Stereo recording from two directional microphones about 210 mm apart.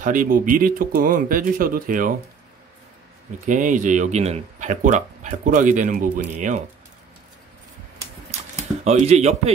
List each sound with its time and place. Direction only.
0.0 s speech: 40° right (ahead or behind)
3.4 s speech: 35° right (ahead or behind)
8.8 s speech: 30° right (ahead or behind)